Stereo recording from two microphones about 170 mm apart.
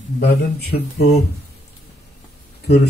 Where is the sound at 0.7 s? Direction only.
70° left (ahead or behind).